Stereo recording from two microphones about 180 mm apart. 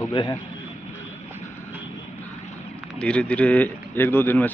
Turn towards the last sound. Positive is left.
turn(degrees=10)  # may be behind; listen again after turning